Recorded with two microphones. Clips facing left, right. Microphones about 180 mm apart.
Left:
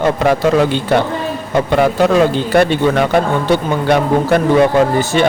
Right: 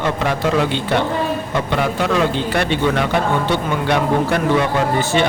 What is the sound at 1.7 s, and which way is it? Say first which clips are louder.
Speech: left 7 dB; 45° left (ahead or behind).